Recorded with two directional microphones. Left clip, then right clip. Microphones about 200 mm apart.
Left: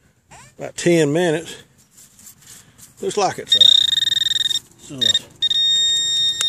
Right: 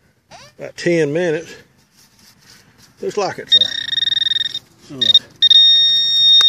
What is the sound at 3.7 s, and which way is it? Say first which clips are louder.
Frog: left 3 dB; 45° left (ahead or behind).